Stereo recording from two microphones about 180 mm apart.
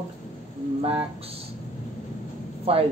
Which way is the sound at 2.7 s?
30° right (ahead or behind).